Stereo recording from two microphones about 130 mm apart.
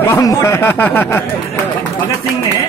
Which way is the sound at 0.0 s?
25° left (ahead or behind).